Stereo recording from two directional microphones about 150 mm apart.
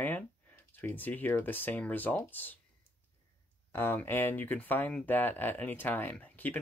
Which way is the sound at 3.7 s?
15° left (ahead or behind).